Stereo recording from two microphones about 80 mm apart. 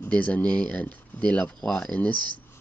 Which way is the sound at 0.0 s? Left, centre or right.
Centre.